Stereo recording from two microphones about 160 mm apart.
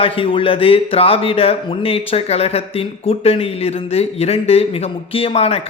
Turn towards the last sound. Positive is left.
turn(degrees=40)  # may be behind; listen again after turning